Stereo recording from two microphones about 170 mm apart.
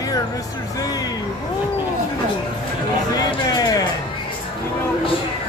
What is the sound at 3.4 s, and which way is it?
Music, 20° left (ahead or behind).